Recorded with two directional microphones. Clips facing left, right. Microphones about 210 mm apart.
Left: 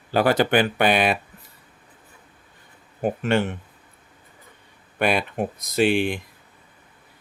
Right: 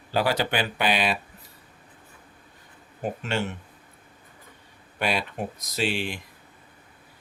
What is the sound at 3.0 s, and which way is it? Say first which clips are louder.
Speech: left 7 dB; 55° left (ahead or behind).